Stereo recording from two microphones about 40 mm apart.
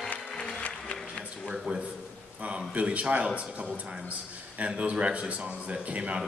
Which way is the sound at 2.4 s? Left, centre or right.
Right.